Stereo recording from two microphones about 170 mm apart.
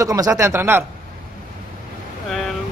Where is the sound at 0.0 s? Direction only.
20° right (ahead or behind).